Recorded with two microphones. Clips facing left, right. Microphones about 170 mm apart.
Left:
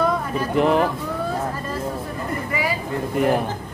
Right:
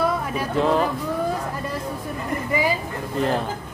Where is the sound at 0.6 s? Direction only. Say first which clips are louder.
Left 2 dB; 15° left (ahead or behind).